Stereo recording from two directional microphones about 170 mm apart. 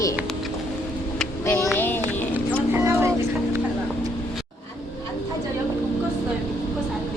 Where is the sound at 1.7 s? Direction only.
10° left (ahead or behind).